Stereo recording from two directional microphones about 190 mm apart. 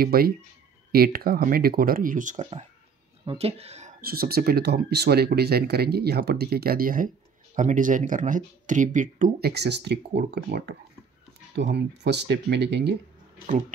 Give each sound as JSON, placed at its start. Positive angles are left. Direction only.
{"t": 0.0, "sound": "speech", "side_deg": -50}
{"t": 4.0, "sound": "speech", "side_deg": -50}
{"t": 9.5, "sound": "speech", "side_deg": -60}